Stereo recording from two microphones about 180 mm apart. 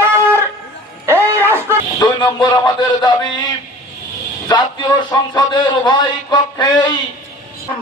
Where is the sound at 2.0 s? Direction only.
25° left (ahead or behind).